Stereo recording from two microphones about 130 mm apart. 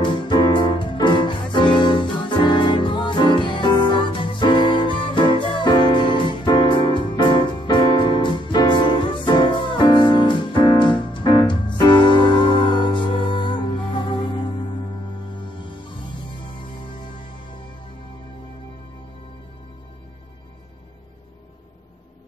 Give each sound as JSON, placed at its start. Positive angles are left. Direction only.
{"t": 0.0, "sound": "music", "side_deg": 40}